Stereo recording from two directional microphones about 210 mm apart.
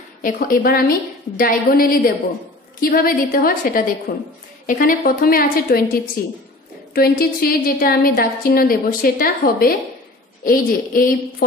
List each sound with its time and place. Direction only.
0.2 s a woman's voice: 40° left (ahead or behind)